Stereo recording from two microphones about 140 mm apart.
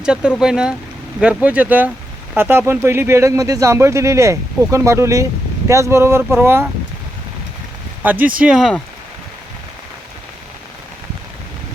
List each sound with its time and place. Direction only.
0.0 s speech: 5° right (ahead or behind)
8.0 s speech: 10° right (ahead or behind)